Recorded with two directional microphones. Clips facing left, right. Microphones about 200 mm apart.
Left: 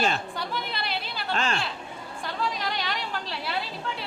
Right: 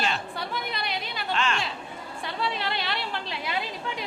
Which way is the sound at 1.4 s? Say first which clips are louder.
Even; 35° left (ahead or behind).